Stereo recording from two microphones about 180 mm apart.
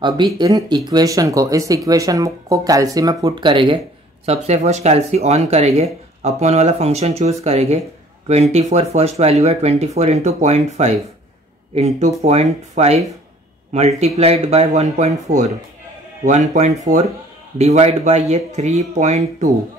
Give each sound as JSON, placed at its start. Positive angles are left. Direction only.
{"t": 0.4, "sound": "speech", "side_deg": -20}
{"t": 4.3, "sound": "speech", "side_deg": -40}